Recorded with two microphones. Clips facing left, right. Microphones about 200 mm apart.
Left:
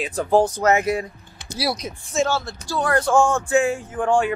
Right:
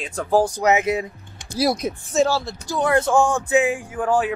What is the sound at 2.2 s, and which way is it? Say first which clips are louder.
Speech: right 3 dB; 35° right (ahead or behind).